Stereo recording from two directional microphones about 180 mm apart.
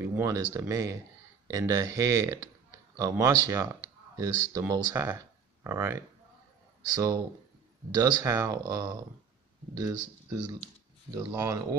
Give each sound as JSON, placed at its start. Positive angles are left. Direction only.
{"t": 0.0, "sound": "speech", "side_deg": -15}
{"t": 11.1, "sound": "speech", "side_deg": -15}